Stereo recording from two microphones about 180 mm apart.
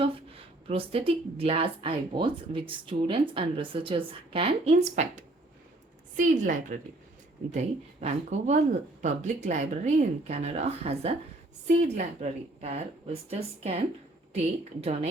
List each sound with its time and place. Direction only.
0.0 s a woman's voice: 30° right (ahead or behind)